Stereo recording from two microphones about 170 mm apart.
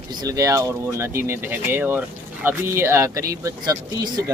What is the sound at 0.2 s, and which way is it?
Speech, 20° right (ahead or behind).